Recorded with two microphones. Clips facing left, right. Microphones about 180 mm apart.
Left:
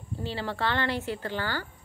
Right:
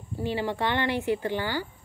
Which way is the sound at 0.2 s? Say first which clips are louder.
Right 4 dB; 15° right (ahead or behind).